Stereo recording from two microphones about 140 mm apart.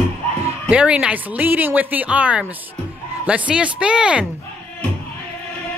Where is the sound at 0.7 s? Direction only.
10° right (ahead or behind).